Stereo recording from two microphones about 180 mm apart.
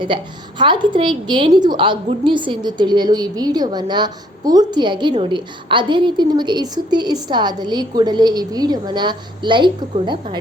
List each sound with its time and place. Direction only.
0.6 s a woman's voice: 25° right (ahead or behind)